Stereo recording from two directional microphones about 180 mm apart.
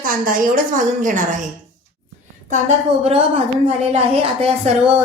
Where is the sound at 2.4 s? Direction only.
40° right (ahead or behind).